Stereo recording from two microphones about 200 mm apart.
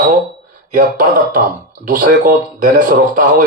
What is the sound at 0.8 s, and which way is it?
A man's voice, 45° right (ahead or behind).